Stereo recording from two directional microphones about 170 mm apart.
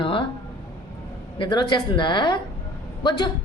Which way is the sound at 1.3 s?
30° left (ahead or behind).